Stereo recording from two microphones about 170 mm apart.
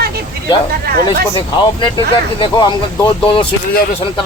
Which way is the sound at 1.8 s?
30° left (ahead or behind).